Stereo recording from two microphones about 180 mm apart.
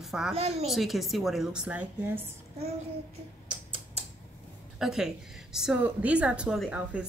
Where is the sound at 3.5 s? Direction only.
30° right (ahead or behind).